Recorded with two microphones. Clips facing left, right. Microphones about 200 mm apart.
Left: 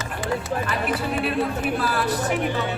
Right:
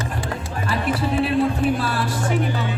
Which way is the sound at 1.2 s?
30° right (ahead or behind).